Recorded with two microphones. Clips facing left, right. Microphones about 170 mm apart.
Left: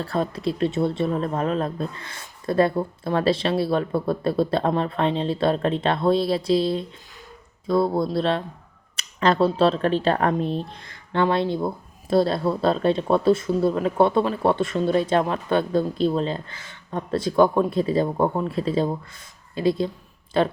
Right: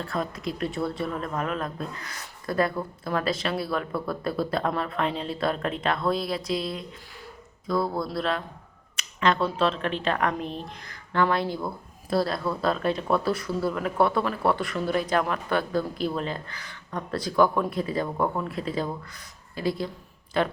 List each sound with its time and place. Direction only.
0.0 s speech: 30° left (ahead or behind)